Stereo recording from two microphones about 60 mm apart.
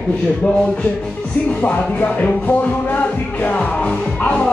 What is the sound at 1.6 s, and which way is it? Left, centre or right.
Speech, left.